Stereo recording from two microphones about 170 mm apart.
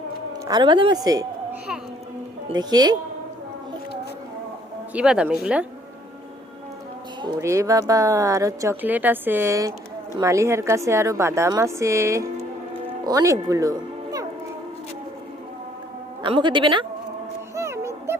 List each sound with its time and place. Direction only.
0.4 s speech: 25° right (ahead or behind)
2.6 s speech: 25° right (ahead or behind)
4.9 s speech: 5° right (ahead or behind)
7.2 s speech: 20° right (ahead or behind)
16.2 s speech: 30° right (ahead or behind)
17.5 s music: 15° right (ahead or behind)